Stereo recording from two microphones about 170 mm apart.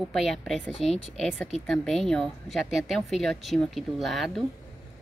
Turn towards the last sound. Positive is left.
turn(degrees=0)  # may be behind; listen again after turning